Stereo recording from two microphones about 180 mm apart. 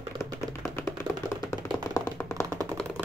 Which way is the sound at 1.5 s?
15° left (ahead or behind).